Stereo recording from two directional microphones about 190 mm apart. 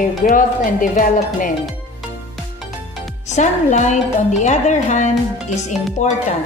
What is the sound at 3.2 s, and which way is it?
Speech, 40° left (ahead or behind).